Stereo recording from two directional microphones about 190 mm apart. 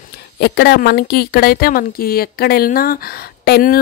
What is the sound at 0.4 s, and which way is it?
Speech, 60° left (ahead or behind).